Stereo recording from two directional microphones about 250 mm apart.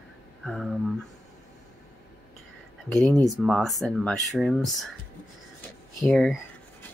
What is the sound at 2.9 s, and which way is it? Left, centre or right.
Speech, centre.